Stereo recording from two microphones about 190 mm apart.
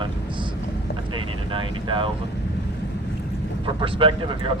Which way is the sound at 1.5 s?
25° right (ahead or behind).